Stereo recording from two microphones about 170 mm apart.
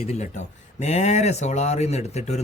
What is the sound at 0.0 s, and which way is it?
A man's voice, 40° left (ahead or behind).